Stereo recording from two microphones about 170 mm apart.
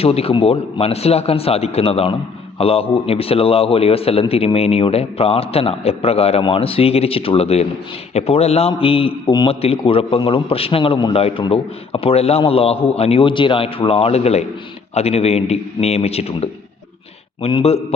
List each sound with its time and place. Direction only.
0.0 s a man's voice: 35° left (ahead or behind)